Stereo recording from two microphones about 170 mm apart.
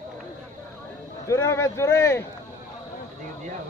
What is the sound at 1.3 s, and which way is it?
Speech, 20° left (ahead or behind).